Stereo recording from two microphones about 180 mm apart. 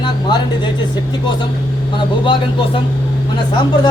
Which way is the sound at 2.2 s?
25° left (ahead or behind).